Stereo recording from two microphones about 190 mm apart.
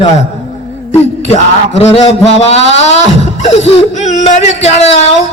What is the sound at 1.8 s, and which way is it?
Speech, 30° left (ahead or behind).